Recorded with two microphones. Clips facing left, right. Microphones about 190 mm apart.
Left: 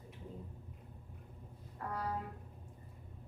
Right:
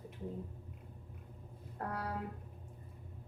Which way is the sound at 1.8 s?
55° right (ahead or behind).